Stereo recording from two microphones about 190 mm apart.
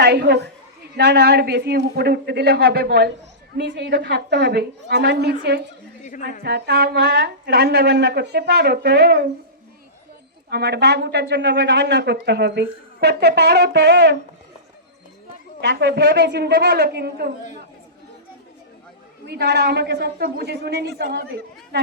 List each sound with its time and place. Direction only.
0.0 s speech: 60° right (ahead or behind)
10.5 s speech: 60° right (ahead or behind)
15.6 s speech: 65° right (ahead or behind)
19.3 s speech: 60° right (ahead or behind)